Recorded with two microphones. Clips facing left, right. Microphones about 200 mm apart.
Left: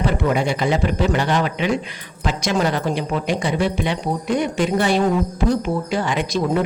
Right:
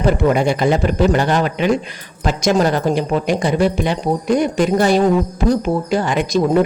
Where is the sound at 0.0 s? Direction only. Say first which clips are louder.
Right 5 dB; 45° right (ahead or behind).